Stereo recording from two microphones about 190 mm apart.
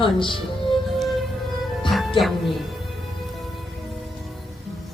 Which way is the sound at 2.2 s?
Centre (ahead or behind).